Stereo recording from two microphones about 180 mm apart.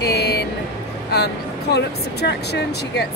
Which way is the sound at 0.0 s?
65° left (ahead or behind).